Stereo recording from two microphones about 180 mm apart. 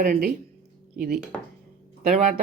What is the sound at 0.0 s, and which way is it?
Speech, 50° right (ahead or behind).